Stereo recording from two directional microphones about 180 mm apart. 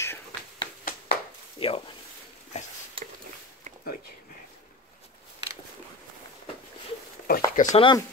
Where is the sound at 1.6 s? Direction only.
30° left (ahead or behind).